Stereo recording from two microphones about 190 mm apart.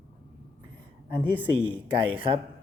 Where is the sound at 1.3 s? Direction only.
10° right (ahead or behind).